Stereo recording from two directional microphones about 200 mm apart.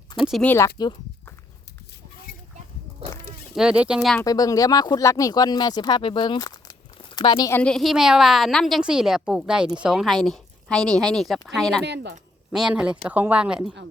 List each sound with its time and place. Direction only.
0.2 s a woman's voice: centre (ahead or behind)
0.8 s a sound: 20° left (ahead or behind)
3.5 s a woman's voice: 5° right (ahead or behind)
4.2 s speech: 15° left (ahead or behind)
7.6 s a woman's voice: centre (ahead or behind)